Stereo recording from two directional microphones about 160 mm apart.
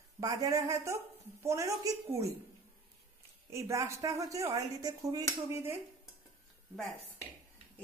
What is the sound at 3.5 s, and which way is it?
A man's voice, 20° right (ahead or behind).